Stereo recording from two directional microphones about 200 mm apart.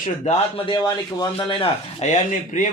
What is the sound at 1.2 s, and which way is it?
Speech, 25° left (ahead or behind).